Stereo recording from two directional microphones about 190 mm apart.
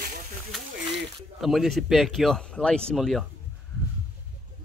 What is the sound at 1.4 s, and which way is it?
Speech, centre (ahead or behind).